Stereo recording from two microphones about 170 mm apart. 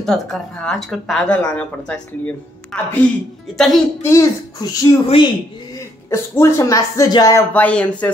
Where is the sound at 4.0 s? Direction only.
15° left (ahead or behind).